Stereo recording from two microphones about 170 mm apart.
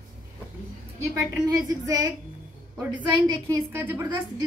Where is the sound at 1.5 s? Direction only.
20° right (ahead or behind).